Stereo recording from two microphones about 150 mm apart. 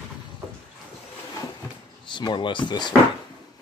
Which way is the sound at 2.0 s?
30° left (ahead or behind).